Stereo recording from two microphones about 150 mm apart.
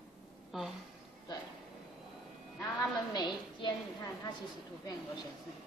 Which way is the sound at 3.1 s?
30° left (ahead or behind).